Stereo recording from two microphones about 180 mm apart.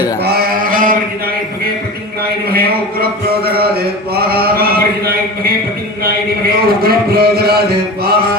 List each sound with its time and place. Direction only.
0.3 s chant: 55° right (ahead or behind)
2.5 s a sound: 60° right (ahead or behind)
6.0 s a man's voice: 60° right (ahead or behind)